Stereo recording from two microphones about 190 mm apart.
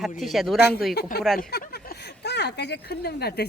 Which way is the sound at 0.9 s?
55° left (ahead or behind).